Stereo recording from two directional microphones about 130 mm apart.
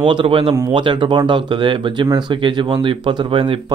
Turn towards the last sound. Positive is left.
turn(degrees=-40)  # may be behind; listen again after turning